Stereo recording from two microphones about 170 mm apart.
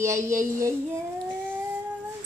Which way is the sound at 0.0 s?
15° right (ahead or behind).